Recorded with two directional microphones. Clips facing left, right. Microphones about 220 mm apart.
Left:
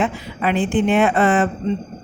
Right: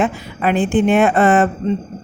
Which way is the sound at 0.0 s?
45° right (ahead or behind).